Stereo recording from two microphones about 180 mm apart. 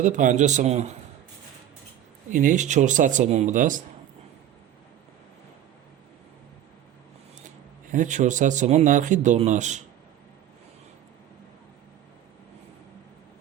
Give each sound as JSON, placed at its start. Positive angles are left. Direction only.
{"t": 0.0, "sound": "speech", "side_deg": -45}
{"t": 2.3, "sound": "speech", "side_deg": -45}
{"t": 7.4, "sound": "speech", "side_deg": -45}